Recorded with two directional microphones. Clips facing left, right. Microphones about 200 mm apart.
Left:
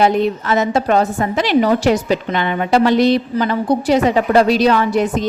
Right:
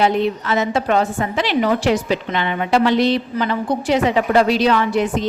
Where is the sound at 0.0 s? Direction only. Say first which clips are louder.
Left 3 dB; 45° left (ahead or behind).